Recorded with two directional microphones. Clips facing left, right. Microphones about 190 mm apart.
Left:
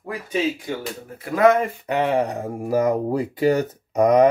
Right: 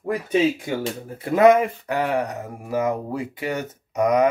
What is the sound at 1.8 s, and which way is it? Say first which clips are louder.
Speech: left 3 dB; 25° left (ahead or behind).